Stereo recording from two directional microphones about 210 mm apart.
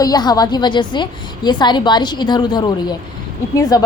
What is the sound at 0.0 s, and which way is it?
A woman's voice, 20° left (ahead or behind).